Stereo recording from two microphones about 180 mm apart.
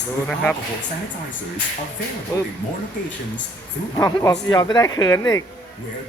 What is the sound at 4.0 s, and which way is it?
Speech, 20° left (ahead or behind).